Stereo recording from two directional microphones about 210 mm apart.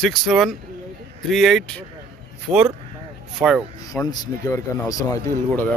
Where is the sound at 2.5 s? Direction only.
25° right (ahead or behind).